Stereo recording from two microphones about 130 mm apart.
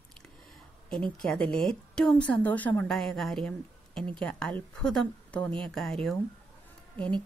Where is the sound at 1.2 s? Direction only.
5° left (ahead or behind).